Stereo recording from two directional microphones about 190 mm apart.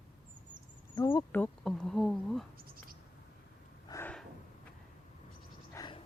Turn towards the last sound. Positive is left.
turn(degrees=20)  # may be behind; listen again after turning